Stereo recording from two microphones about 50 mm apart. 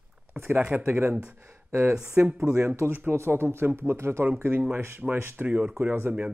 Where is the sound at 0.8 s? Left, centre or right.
Right.